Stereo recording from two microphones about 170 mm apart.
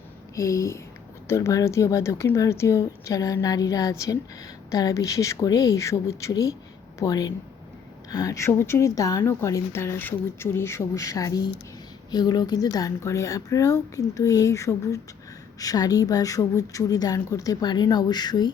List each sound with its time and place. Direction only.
0.3 s a woman's voice: 15° left (ahead or behind)